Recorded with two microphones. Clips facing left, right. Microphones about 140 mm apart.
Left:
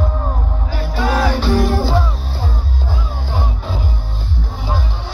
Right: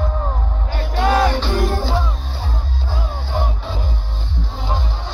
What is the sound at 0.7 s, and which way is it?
Music, 55° right (ahead or behind).